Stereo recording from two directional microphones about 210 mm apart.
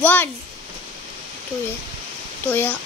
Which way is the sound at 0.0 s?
10° left (ahead or behind).